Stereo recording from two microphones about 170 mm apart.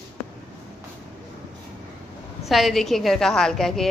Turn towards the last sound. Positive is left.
turn(degrees=0)  # may be behind; listen again after turning